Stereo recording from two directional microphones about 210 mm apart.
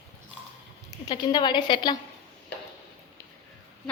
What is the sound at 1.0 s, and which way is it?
Speech, 20° left (ahead or behind).